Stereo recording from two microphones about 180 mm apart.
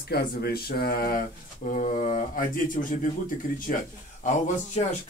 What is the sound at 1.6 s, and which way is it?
Speech, 45° left (ahead or behind).